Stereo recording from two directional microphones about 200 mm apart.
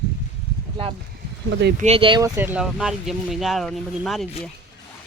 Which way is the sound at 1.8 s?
30° right (ahead or behind).